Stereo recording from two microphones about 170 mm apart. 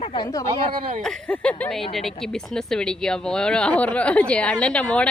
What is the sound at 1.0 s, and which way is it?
A woman's voice, 5° left (ahead or behind).